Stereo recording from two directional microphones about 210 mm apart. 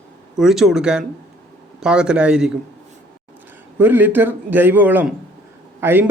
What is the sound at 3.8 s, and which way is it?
Speech, 10° right (ahead or behind).